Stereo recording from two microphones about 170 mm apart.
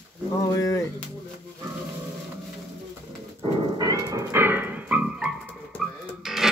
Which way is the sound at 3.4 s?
30° right (ahead or behind).